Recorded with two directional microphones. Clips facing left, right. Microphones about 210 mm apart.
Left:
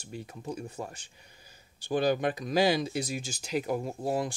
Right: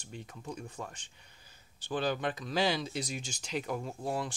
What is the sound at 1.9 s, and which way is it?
Speech, 10° left (ahead or behind).